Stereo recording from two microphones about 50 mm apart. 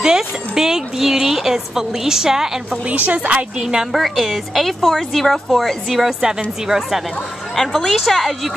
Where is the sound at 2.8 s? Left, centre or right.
Right.